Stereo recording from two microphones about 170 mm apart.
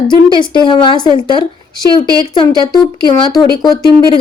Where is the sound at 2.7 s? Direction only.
25° left (ahead or behind).